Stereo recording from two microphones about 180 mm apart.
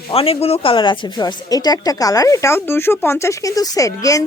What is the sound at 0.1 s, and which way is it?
Speech, 30° left (ahead or behind).